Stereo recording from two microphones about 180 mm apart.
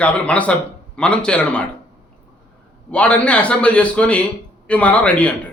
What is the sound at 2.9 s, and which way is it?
Speech, 5° left (ahead or behind).